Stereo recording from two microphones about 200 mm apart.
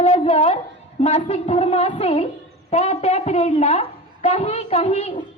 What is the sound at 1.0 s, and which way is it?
A woman's voice, 30° left (ahead or behind).